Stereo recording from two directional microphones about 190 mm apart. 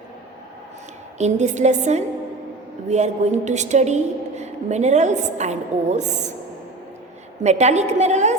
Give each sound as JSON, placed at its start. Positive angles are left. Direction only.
{"t": 1.2, "sound": "a woman's voice", "side_deg": -40}
{"t": 7.4, "sound": "a woman's voice", "side_deg": -35}